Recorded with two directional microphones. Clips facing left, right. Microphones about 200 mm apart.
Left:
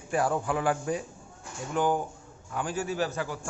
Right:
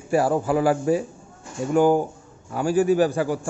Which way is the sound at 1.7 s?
45° right (ahead or behind).